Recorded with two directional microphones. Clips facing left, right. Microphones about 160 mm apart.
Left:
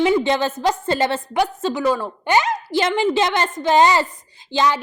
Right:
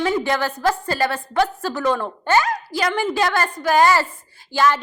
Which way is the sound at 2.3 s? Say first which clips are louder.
Even; 20° left (ahead or behind).